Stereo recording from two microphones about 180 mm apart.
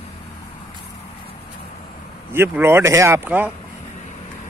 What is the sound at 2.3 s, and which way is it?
Speech, 15° right (ahead or behind).